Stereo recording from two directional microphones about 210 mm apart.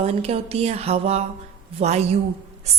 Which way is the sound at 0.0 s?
30° right (ahead or behind).